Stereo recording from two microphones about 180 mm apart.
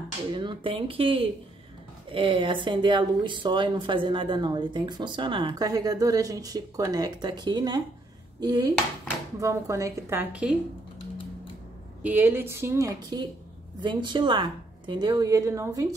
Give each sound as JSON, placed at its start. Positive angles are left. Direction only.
{"t": 0.3, "sound": "speech", "side_deg": -25}
{"t": 12.0, "sound": "speech", "side_deg": -10}